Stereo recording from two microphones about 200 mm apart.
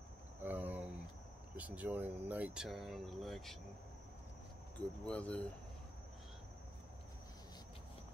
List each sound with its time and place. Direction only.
0.4 s a sound: 10° right (ahead or behind)
1.6 s speech: 10° right (ahead or behind)
4.7 s speech: 5° left (ahead or behind)